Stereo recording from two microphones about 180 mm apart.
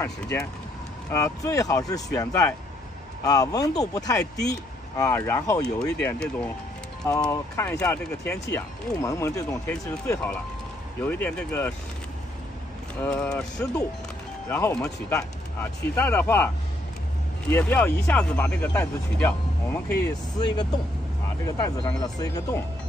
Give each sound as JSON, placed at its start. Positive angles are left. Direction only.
{"t": 0.0, "sound": "speech", "side_deg": 15}
{"t": 13.0, "sound": "speech", "side_deg": 10}
{"t": 17.5, "sound": "speech", "side_deg": 10}
{"t": 20.3, "sound": "speech", "side_deg": 25}